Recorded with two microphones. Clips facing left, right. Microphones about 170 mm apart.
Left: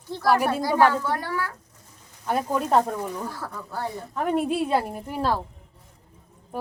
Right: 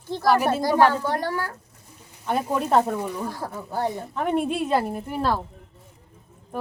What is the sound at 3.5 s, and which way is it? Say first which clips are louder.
Speech: right 5 dB; 25° right (ahead or behind).